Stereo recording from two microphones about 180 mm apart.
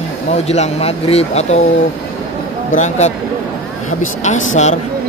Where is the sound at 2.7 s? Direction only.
40° left (ahead or behind).